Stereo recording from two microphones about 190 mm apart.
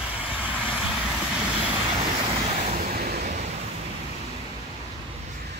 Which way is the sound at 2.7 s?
55° right (ahead or behind).